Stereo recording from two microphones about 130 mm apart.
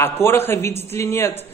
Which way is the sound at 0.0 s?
20° left (ahead or behind).